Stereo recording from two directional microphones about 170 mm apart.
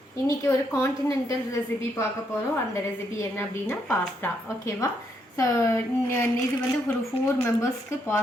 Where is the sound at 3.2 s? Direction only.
15° left (ahead or behind).